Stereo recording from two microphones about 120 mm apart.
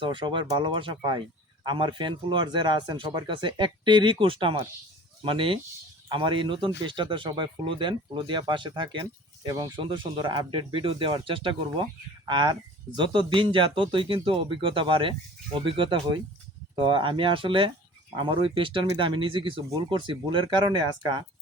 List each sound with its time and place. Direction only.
0.0 s speech: 40° right (ahead or behind)